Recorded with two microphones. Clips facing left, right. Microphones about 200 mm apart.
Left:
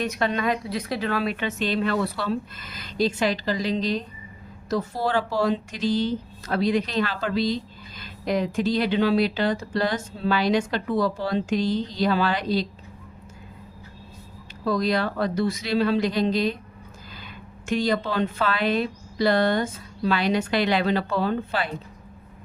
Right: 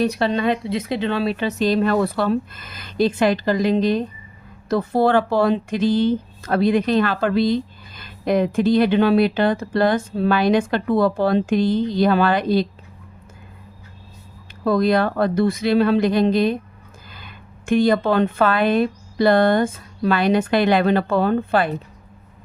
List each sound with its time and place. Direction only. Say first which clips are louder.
0.0 s speech: right 6 dB; 35° right (ahead or behind); by 12.6 s 55° right (ahead or behind)
14.6 s speech: right 6 dB; 55° right (ahead or behind)